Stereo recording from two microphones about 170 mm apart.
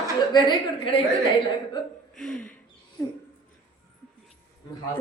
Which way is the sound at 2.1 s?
5° left (ahead or behind).